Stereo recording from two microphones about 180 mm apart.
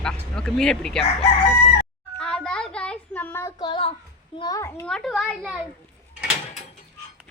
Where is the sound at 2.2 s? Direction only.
5° left (ahead or behind).